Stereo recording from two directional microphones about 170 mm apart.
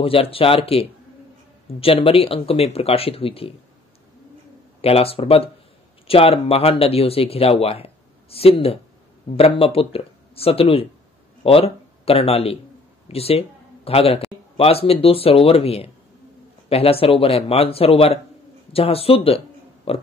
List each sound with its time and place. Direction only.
0.0 s speech: 35° left (ahead or behind)
4.8 s speech: 35° left (ahead or behind)